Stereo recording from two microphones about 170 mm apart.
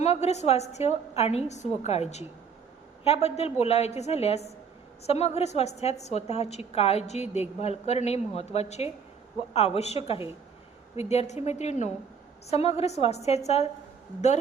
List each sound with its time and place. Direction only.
0.0 s a woman's voice: 40° left (ahead or behind)